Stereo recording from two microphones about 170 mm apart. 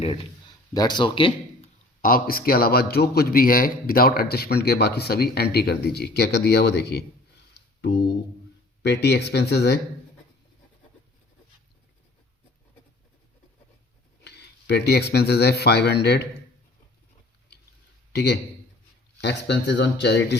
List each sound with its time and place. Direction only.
0.0 s a man's voice: 35° left (ahead or behind)
0.7 s a man's voice: 25° left (ahead or behind)
2.0 s a man's voice: 55° left (ahead or behind); by 7.0 s 80° left
7.8 s a sound: 75° left (ahead or behind)
8.8 s speech: 85° left
14.3 s speech: 85° left
18.1 s a man's voice: 80° left